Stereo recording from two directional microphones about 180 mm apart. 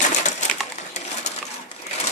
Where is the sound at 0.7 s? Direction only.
40° left (ahead or behind).